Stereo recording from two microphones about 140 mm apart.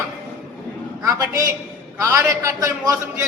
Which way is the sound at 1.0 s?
20° right (ahead or behind).